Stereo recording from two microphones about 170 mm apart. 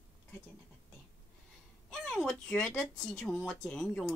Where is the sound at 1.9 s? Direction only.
5° left (ahead or behind).